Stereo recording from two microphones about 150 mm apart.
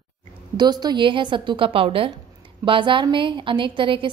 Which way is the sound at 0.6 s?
30° right (ahead or behind).